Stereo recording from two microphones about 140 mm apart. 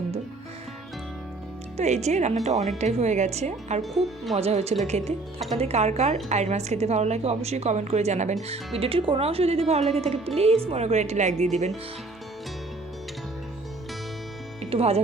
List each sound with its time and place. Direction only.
1.7 s a woman's voice: 55° right (ahead or behind)
14.6 s music: 45° right (ahead or behind)